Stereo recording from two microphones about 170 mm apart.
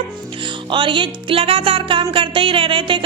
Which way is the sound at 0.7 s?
30° right (ahead or behind).